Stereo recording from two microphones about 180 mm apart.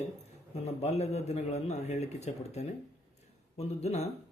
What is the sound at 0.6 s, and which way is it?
Speech, 35° left (ahead or behind).